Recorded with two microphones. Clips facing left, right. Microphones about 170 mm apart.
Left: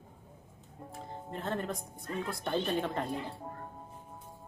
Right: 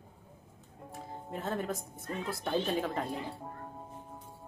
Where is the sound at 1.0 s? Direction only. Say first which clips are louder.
Even; 5° right (ahead or behind).